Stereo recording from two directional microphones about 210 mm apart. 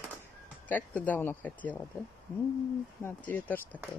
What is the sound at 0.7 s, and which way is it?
Speech, 5° left (ahead or behind).